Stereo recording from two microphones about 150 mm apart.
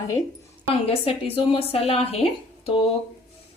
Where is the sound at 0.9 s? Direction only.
40° left (ahead or behind).